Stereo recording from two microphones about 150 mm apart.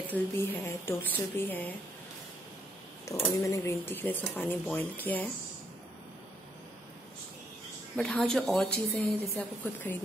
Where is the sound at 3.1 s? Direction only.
20° left (ahead or behind).